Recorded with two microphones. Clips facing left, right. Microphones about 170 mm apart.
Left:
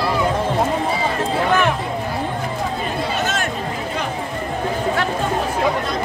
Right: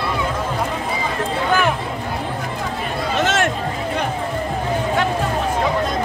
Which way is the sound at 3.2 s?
90° right.